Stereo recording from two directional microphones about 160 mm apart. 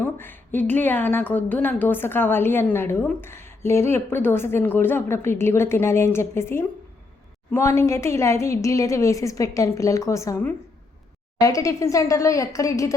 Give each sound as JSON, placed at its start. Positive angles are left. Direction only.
{"t": 0.0, "sound": "a woman's voice", "side_deg": 10}